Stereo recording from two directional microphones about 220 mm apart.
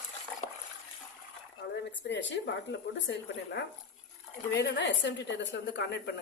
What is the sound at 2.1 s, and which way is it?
A woman's voice, 55° left (ahead or behind).